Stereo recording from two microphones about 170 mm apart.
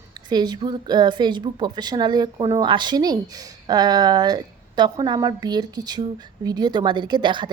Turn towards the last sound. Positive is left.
turn(degrees=-25)  # may be behind; listen again after turning